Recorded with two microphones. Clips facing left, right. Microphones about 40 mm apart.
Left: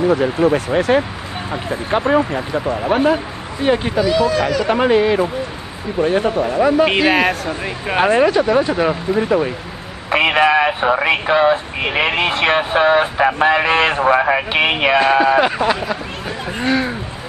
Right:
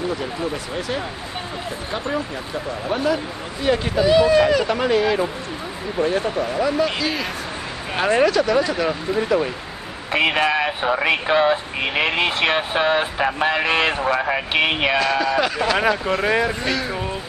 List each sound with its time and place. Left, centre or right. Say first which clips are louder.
0.1 s speech: left 11 dB; left
4.0 s speech: right 4 dB; centre
4.6 s speech: left 5 dB; left
7.9 s speech: left 4 dB; left
15.0 s speech: left 6 dB; left
16.1 s speech: right 8 dB; right
16.5 s speech: left 6 dB; left